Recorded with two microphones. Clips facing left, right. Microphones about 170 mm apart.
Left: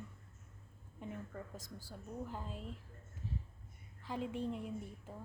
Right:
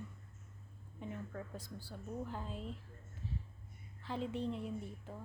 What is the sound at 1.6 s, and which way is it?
Speech, 45° left (ahead or behind).